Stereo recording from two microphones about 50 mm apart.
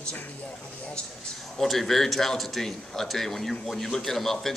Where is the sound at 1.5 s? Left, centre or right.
Centre.